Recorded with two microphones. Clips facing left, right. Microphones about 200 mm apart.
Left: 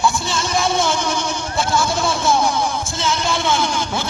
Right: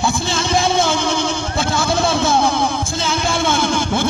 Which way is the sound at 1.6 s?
60° right (ahead or behind).